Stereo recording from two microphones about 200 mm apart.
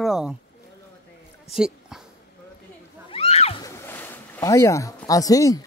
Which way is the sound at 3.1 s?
30° left (ahead or behind).